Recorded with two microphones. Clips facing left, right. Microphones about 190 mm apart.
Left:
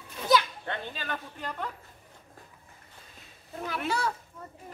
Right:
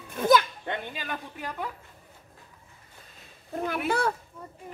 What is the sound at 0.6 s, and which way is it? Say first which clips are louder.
Speech: right 2 dB; 15° right (ahead or behind).